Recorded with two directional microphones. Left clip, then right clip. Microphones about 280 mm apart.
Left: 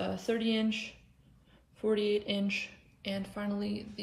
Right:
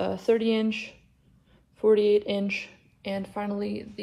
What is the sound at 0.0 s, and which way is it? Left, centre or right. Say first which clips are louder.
Speech: right 9 dB; centre.